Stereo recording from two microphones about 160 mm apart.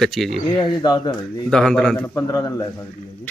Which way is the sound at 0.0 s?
Centre (ahead or behind).